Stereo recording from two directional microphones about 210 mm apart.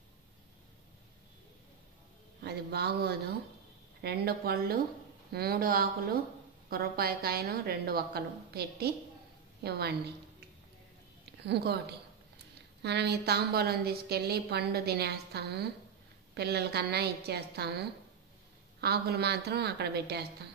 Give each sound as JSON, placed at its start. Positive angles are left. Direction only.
{"t": 2.4, "sound": "a woman's voice", "side_deg": -50}
{"t": 11.4, "sound": "a woman's voice", "side_deg": -50}
{"t": 12.8, "sound": "a woman's voice", "side_deg": -50}